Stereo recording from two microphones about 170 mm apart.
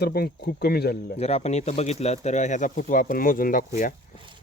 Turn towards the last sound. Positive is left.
turn(degrees=50)  # may be behind; listen again after turning